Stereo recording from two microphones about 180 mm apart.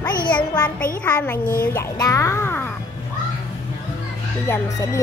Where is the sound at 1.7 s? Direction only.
15° left (ahead or behind).